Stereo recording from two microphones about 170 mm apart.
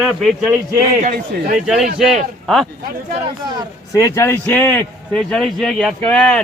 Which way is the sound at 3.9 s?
20° left (ahead or behind).